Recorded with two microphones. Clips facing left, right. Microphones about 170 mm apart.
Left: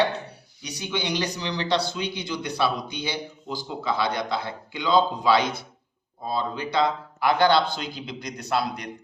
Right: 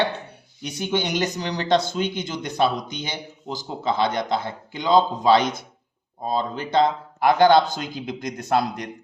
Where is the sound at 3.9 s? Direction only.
20° right (ahead or behind).